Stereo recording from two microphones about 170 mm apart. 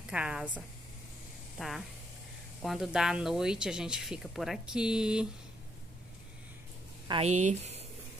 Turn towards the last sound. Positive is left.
turn(degrees=-40)  # may be behind; listen again after turning